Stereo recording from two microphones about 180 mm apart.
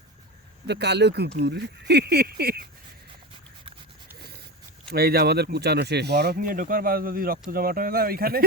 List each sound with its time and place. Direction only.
0.7 s speech: 70° right (ahead or behind)
4.9 s speech: 60° right (ahead or behind)